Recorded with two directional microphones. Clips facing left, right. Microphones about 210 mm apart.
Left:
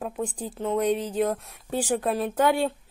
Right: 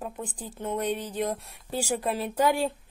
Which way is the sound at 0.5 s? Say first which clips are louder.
Left 5 dB; 10° left (ahead or behind).